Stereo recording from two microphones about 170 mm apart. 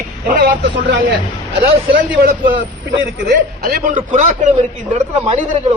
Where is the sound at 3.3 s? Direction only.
60° right (ahead or behind).